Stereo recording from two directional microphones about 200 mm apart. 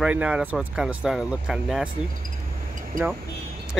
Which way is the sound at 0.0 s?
5° right (ahead or behind).